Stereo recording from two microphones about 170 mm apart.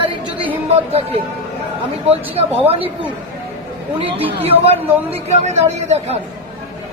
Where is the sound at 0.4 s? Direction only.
35° right (ahead or behind).